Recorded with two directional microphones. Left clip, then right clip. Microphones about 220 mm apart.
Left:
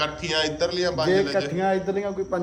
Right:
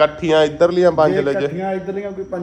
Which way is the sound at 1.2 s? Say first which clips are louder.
Right 4 dB; 10° left (ahead or behind).